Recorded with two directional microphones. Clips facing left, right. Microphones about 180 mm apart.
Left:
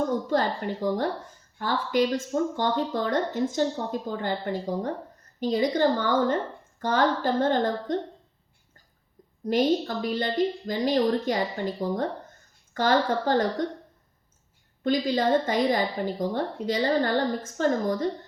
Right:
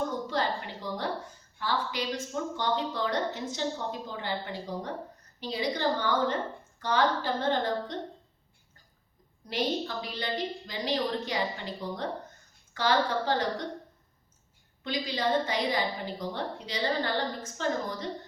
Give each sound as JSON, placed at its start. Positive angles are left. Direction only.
{"t": 0.3, "sound": "speech", "side_deg": 45}
{"t": 9.5, "sound": "speech", "side_deg": 50}
{"t": 14.8, "sound": "speech", "side_deg": 45}